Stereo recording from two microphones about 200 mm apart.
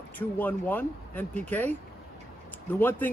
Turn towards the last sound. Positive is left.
turn(degrees=10)  # may be behind; listen again after turning